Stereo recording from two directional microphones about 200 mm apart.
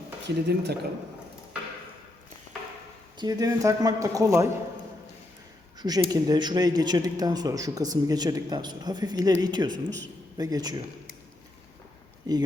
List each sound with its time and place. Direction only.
0.3 s speech: 55° right (ahead or behind)
3.2 s speech: 20° right (ahead or behind)
5.8 s speech: 20° right (ahead or behind)